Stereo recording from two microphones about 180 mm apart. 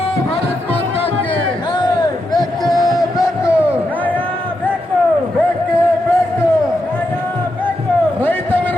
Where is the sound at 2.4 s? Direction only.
20° left (ahead or behind).